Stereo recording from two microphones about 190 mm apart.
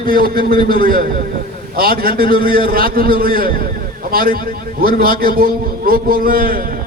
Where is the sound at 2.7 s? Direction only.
50° right (ahead or behind).